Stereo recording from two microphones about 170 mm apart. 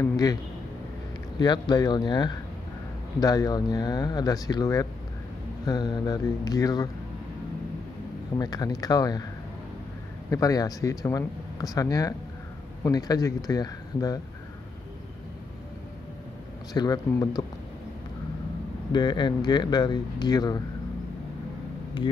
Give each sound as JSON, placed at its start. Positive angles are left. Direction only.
{"t": 0.0, "sound": "speech", "side_deg": 20}
{"t": 1.4, "sound": "speech", "side_deg": 25}
{"t": 8.4, "sound": "speech", "side_deg": 20}
{"t": 10.3, "sound": "speech", "side_deg": 20}
{"t": 16.7, "sound": "speech", "side_deg": 25}
{"t": 18.9, "sound": "speech", "side_deg": 25}